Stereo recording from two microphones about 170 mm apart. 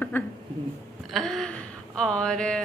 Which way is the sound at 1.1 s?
Centre (ahead or behind).